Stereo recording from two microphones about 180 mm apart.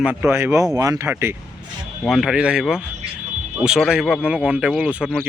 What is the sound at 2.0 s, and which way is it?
Speech, centre (ahead or behind).